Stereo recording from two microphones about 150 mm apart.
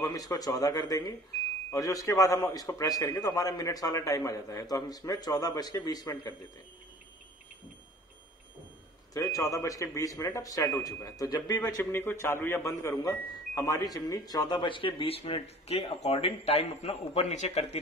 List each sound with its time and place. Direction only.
0.0 s a man's voice: 25° left (ahead or behind)
9.1 s a man's voice: 20° left (ahead or behind); by 17.6 s 50° left (ahead or behind)